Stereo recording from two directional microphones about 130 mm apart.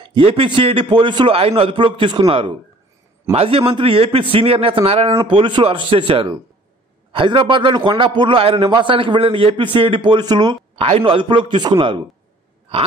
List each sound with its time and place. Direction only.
0.0 s a man's voice: 45° right (ahead or behind)
10.8 s a man's voice: 45° right (ahead or behind)